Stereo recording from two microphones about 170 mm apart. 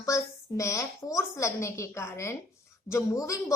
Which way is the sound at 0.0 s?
20° left (ahead or behind).